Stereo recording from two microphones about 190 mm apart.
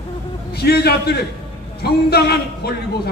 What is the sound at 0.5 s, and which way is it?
A man's voice, 55° left (ahead or behind).